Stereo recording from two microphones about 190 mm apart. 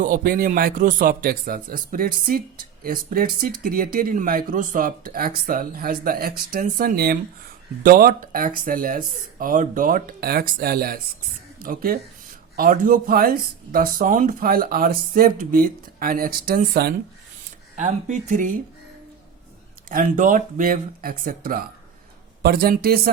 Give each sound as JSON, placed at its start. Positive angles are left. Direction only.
{"t": 0.0, "sound": "speech", "side_deg": -45}
{"t": 17.7, "sound": "speech", "side_deg": -40}
{"t": 19.9, "sound": "speech", "side_deg": -45}